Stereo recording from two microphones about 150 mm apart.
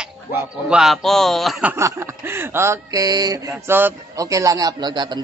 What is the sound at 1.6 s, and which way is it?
A man's voice, 20° right (ahead or behind).